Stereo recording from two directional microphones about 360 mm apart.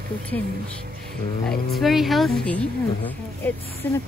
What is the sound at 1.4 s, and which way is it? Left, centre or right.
A woman's voice, centre.